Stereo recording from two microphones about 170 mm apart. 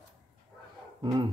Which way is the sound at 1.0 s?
25° right (ahead or behind).